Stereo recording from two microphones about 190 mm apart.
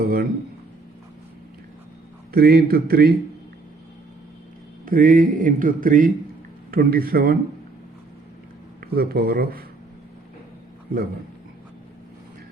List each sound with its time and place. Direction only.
0.0 s a sound: 50° right (ahead or behind)
2.3 s a man's voice: 55° right (ahead or behind)
4.9 s a man's voice: 45° right (ahead or behind)
8.8 s a man's voice: 55° right (ahead or behind)